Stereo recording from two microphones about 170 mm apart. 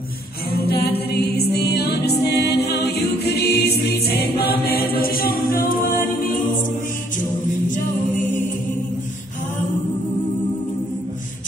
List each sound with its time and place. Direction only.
0.7 s music: 70° left (ahead or behind)
4.4 s choir: 65° left (ahead or behind)